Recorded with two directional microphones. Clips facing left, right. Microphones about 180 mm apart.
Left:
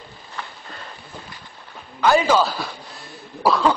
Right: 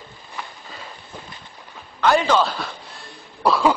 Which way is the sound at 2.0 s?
5° left (ahead or behind).